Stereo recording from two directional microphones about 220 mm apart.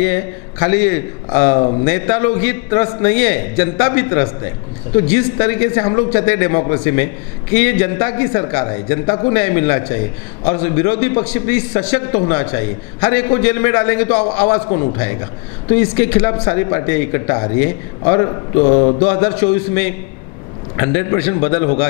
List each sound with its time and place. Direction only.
0.0 s a man's voice: 15° left (ahead or behind)
14.7 s a man's voice: 25° left (ahead or behind)
19.0 s a man's voice: 10° left (ahead or behind)